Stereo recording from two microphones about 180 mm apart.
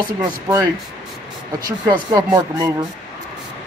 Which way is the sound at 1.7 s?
20° right (ahead or behind).